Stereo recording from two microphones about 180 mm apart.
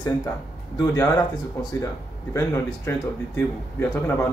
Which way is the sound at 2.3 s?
15° left (ahead or behind).